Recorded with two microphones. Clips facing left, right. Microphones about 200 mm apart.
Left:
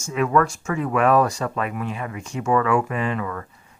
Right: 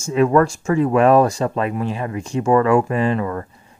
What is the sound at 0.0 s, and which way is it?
Speech, 30° right (ahead or behind).